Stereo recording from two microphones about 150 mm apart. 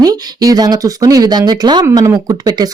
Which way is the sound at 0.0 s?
25° right (ahead or behind).